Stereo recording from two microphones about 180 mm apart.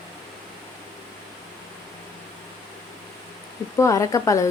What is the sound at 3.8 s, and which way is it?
Speech, 15° left (ahead or behind).